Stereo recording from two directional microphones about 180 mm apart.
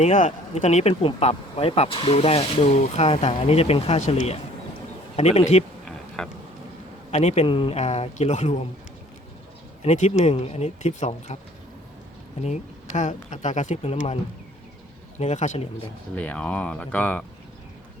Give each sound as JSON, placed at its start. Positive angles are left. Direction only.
{"t": 0.0, "sound": "speech", "side_deg": 40}
{"t": 6.2, "sound": "speech", "side_deg": 5}
{"t": 7.1, "sound": "speech", "side_deg": 40}
{"t": 9.8, "sound": "speech", "side_deg": 40}
{"t": 12.4, "sound": "speech", "side_deg": 40}
{"t": 15.2, "sound": "speech", "side_deg": 40}
{"t": 16.1, "sound": "speech", "side_deg": 5}